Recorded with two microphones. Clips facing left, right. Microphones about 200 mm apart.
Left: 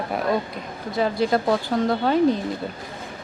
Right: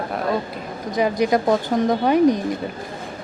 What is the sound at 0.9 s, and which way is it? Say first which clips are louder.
Speech: right 2 dB; 15° right (ahead or behind).